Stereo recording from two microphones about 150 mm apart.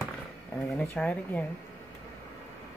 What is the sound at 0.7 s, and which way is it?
Speech, 10° left (ahead or behind).